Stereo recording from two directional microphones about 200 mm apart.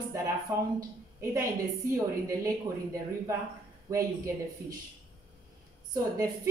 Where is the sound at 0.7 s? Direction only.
15° right (ahead or behind).